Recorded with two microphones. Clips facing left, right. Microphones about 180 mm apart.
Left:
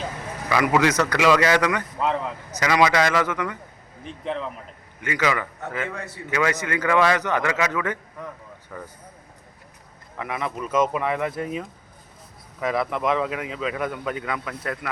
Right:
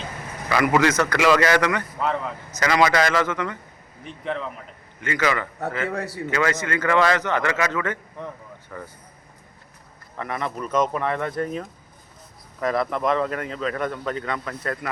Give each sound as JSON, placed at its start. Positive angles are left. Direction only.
{"t": 0.5, "sound": "a man's voice", "side_deg": 15}
{"t": 2.0, "sound": "a man's voice", "side_deg": 0}
{"t": 2.6, "sound": "a man's voice", "side_deg": 10}
{"t": 4.2, "sound": "a man's voice", "side_deg": 0}
{"t": 4.9, "sound": "a man's voice", "side_deg": 15}
{"t": 5.9, "sound": "a man's voice", "side_deg": -35}
{"t": 6.3, "sound": "a man's voice", "side_deg": 15}
{"t": 10.2, "sound": "a man's voice", "side_deg": 5}